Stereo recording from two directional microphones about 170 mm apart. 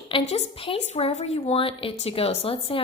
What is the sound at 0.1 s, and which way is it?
Speech, 35° left (ahead or behind).